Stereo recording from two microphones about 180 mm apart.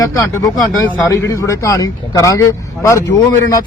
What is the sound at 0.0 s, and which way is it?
Speech, 15° left (ahead or behind).